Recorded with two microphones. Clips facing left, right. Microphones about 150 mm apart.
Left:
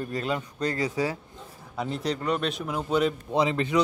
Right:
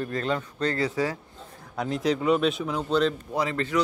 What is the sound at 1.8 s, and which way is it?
Speech, centre (ahead or behind).